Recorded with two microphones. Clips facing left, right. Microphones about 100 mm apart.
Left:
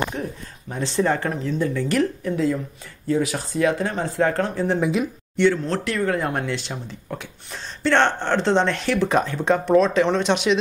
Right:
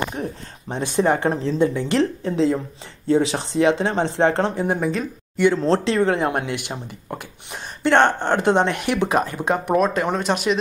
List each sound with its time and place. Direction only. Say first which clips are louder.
0.1 s speech: right 1 dB; 25° right (ahead or behind)
0.8 s speech: right 3 dB; 15° right (ahead or behind)
1.3 s speech: right 4 dB; 30° right (ahead or behind); by 10.6 s 5° right (ahead or behind)